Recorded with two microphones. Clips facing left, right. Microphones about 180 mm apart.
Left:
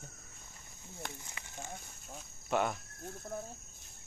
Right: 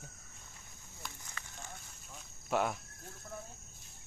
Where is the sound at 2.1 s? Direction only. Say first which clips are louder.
Left 1 dB; centre (ahead or behind).